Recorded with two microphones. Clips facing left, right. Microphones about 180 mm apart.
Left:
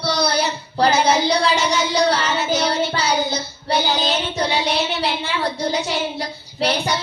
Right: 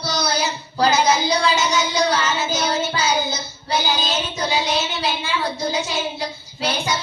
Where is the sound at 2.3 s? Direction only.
60° left (ahead or behind).